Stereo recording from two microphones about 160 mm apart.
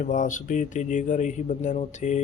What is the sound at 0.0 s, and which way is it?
Speech, 50° left (ahead or behind).